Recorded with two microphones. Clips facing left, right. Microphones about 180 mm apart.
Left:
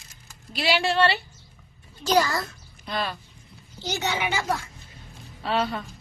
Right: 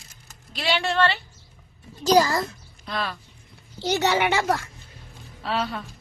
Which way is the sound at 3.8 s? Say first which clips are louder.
Right 6 dB; 65° right (ahead or behind).